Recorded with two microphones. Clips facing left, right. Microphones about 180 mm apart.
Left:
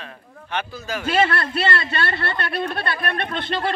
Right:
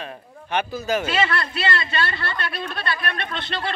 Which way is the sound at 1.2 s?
55° left (ahead or behind).